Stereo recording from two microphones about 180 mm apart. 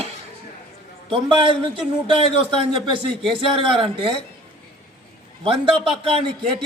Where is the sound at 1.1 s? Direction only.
30° right (ahead or behind).